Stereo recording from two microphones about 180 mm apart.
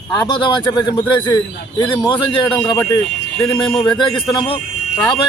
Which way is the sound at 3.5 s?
5° left (ahead or behind).